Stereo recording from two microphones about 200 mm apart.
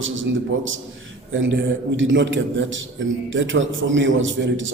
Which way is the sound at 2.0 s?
65° right (ahead or behind).